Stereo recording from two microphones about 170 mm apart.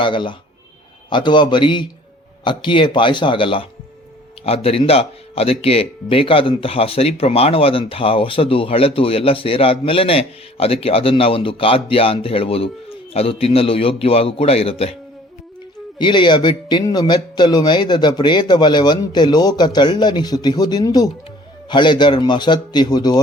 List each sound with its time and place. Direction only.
0.0 s a man's voice: 30° left (ahead or behind)
16.0 s a man's voice: 25° left (ahead or behind)